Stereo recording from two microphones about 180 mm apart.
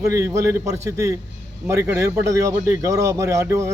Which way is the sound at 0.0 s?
15° right (ahead or behind).